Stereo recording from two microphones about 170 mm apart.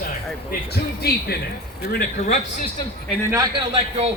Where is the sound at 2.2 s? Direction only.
40° left (ahead or behind).